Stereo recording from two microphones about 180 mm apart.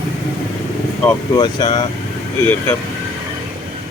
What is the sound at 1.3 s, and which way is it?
Speech, 25° left (ahead or behind).